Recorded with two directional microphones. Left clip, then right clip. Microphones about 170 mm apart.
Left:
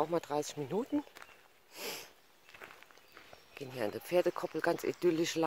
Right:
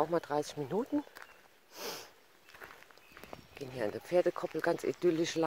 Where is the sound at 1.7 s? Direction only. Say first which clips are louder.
Even; centre (ahead or behind).